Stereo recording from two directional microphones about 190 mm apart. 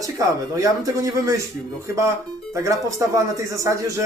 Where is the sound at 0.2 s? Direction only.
15° right (ahead or behind).